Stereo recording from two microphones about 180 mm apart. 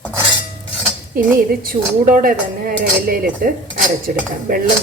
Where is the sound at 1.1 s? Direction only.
55° right (ahead or behind).